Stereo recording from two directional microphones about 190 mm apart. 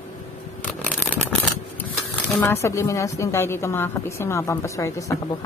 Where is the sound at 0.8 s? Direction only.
5° left (ahead or behind).